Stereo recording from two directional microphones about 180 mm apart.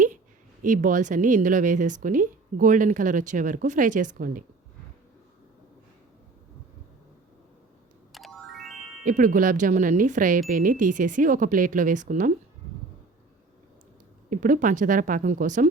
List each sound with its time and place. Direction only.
0.6 s speech: 45° right (ahead or behind)
8.1 s music: centre (ahead or behind)
9.0 s speech: 50° right (ahead or behind)
14.3 s speech: 45° right (ahead or behind)